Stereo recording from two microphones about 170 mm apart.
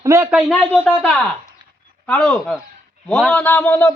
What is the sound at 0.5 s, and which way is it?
Speech, 5° left (ahead or behind).